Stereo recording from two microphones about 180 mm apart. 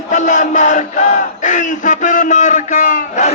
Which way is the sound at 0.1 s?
45° left (ahead or behind).